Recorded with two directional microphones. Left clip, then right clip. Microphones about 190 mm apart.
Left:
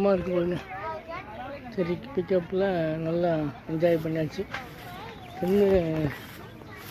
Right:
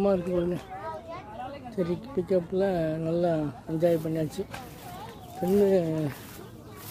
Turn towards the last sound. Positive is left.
turn(degrees=-5)  # may be behind; listen again after turning